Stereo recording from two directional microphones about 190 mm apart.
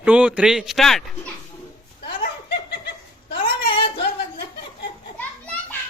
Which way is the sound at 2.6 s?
60° left (ahead or behind).